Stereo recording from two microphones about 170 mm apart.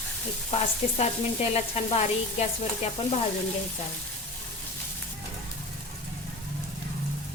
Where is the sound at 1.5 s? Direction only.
40° left (ahead or behind).